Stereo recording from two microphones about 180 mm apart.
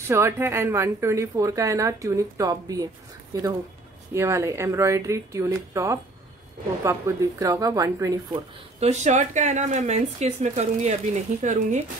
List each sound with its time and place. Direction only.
0.0 s a woman's voice: 15° right (ahead or behind)
8.7 s speech: 40° right (ahead or behind)